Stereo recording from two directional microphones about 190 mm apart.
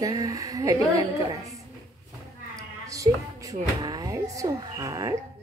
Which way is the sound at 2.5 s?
15° right (ahead or behind).